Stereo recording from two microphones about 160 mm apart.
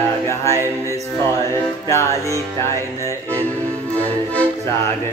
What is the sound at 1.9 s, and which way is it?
Music, 20° left (ahead or behind).